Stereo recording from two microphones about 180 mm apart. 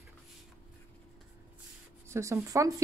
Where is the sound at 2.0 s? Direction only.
15° right (ahead or behind).